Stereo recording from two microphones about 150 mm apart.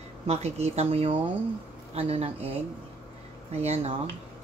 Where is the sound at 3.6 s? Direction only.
45° right (ahead or behind).